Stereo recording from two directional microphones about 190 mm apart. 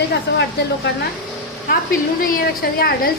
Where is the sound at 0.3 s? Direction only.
60° left (ahead or behind).